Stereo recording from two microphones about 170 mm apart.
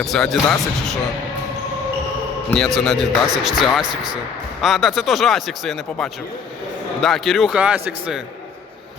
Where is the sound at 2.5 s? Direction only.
Centre (ahead or behind).